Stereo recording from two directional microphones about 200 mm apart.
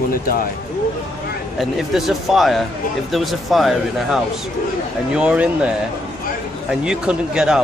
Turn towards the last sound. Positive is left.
turn(degrees=-5)  # may be behind; listen again after turning